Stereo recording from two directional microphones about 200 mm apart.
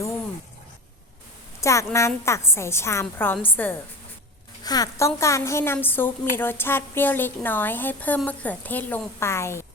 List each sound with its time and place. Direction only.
1.6 s a woman's voice: 15° left (ahead or behind)